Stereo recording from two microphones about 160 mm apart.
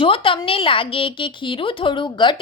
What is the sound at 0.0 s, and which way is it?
A woman's voice, 35° left (ahead or behind).